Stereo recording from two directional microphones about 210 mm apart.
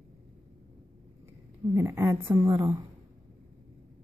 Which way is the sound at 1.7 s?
15° right (ahead or behind).